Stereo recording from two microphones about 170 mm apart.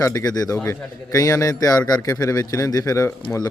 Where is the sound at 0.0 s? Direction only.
20° left (ahead or behind).